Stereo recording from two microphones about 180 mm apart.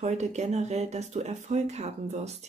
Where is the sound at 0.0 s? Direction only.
40° right (ahead or behind).